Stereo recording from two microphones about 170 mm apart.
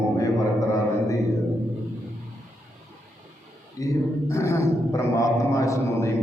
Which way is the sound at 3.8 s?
20° left (ahead or behind).